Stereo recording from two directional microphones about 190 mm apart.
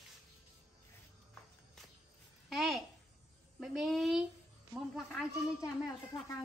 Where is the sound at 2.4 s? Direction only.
Centre (ahead or behind).